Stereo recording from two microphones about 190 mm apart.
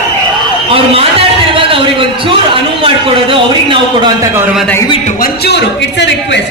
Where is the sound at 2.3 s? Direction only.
30° right (ahead or behind).